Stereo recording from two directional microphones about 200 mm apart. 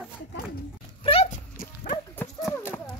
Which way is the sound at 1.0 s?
30° left (ahead or behind).